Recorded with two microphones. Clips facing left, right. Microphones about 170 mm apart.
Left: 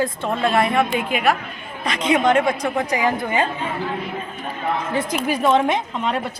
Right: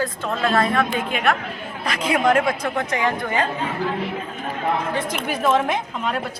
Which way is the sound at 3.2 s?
15° left (ahead or behind).